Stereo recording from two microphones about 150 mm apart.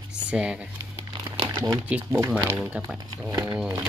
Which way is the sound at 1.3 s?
30° right (ahead or behind).